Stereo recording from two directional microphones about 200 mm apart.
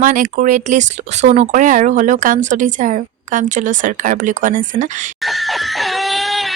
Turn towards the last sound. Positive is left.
turn(degrees=0)  # may be behind; listen again after turning